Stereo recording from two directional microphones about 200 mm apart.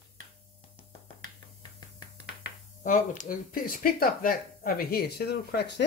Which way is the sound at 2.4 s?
40° left (ahead or behind).